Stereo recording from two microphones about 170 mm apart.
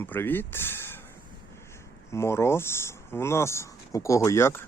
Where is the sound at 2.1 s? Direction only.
15° left (ahead or behind).